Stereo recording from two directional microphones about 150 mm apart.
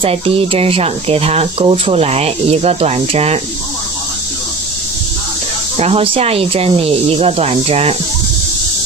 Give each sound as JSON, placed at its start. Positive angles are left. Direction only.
{"t": 0.0, "sound": "speech", "side_deg": -40}
{"t": 5.8, "sound": "speech", "side_deg": -40}